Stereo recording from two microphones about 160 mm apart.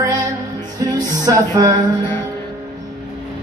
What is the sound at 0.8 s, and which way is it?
Music, 25° right (ahead or behind).